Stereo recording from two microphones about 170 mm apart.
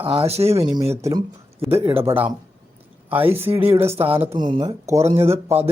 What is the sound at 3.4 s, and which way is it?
Speech, 15° right (ahead or behind).